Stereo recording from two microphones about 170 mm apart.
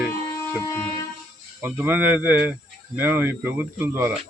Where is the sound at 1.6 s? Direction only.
10° right (ahead or behind).